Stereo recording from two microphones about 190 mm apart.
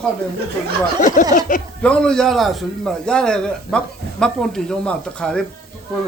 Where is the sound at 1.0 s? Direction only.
45° left (ahead or behind).